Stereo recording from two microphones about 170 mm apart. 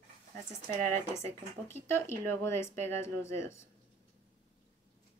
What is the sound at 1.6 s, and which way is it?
Speech, 15° left (ahead or behind).